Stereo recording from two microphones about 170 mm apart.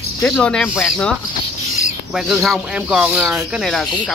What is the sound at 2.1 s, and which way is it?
Speech, centre (ahead or behind).